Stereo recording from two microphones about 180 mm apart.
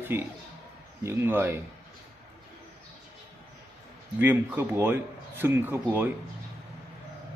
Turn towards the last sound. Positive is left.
turn(degrees=-10)  # may be behind; listen again after turning